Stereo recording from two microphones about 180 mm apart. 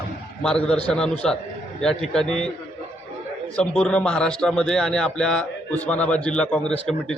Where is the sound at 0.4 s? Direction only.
5° left (ahead or behind).